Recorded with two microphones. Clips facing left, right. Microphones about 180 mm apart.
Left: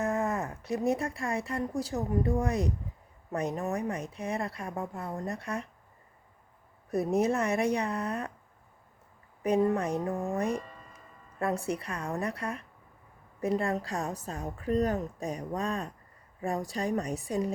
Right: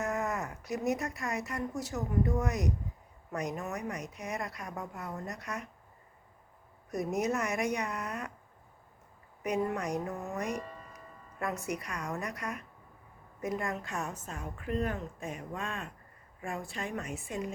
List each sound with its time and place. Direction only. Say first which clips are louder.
0.0 s speech: left 4 dB; 30° left (ahead or behind)
6.9 s a woman's voice: left 5 dB; 30° left (ahead or behind)
9.4 s a woman's voice: left 6 dB; 30° left (ahead or behind)